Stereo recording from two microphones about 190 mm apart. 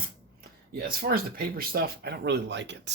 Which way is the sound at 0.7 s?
50° right (ahead or behind).